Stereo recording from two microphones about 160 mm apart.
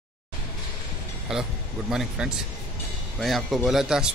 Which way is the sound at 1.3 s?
5° right (ahead or behind).